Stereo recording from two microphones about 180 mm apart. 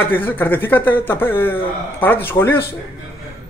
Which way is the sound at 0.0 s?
10° left (ahead or behind).